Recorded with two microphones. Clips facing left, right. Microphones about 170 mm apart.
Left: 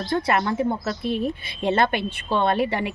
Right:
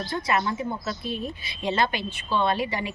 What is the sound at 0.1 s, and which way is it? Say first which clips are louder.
A woman's voice: left 5 dB; 60° left (ahead or behind).